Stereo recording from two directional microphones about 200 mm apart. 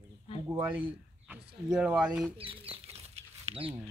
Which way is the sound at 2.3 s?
30° right (ahead or behind).